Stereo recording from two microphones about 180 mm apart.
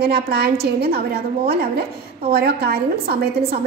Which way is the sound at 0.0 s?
60° right (ahead or behind).